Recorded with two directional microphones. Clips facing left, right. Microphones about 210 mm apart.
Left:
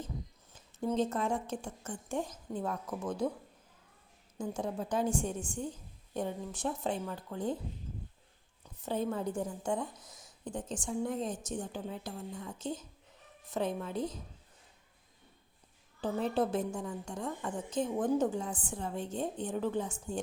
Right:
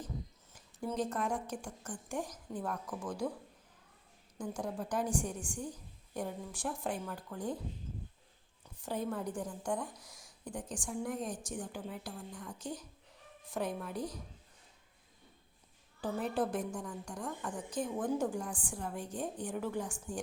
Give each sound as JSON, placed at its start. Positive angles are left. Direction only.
{"t": 0.5, "sound": "a woman's voice", "side_deg": 20}
{"t": 4.4, "sound": "a woman's voice", "side_deg": 25}
{"t": 8.8, "sound": "a woman's voice", "side_deg": 25}
{"t": 16.0, "sound": "a woman's voice", "side_deg": 25}